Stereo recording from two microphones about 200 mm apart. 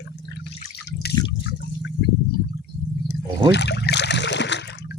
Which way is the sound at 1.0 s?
55° left (ahead or behind).